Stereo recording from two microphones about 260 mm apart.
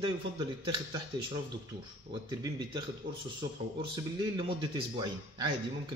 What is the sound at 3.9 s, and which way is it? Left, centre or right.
Speech, centre.